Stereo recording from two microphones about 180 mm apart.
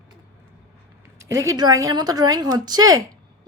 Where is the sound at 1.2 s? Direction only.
90° right.